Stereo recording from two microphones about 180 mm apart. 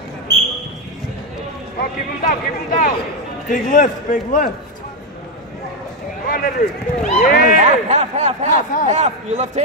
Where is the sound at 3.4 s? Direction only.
45° left (ahead or behind).